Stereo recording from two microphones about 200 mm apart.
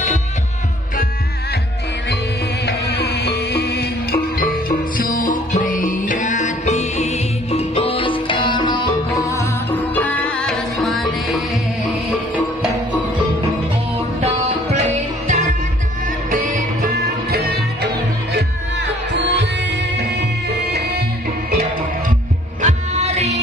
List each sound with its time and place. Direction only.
2.6 s music: 55° left (ahead or behind); by 11.4 s centre (ahead or behind)
14.2 s music: 35° right (ahead or behind)
16.5 s music: 50° right (ahead or behind)
22.6 s music: 35° right (ahead or behind)